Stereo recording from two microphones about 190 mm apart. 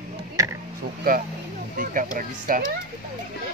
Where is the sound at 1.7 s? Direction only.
45° right (ahead or behind).